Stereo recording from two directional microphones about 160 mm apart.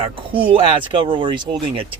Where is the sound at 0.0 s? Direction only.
35° right (ahead or behind).